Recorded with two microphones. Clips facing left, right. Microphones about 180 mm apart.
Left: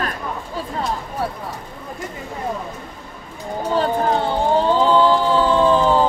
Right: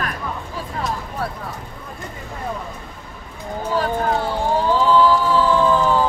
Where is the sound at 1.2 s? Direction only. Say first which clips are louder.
Left 3 dB; 10° left (ahead or behind).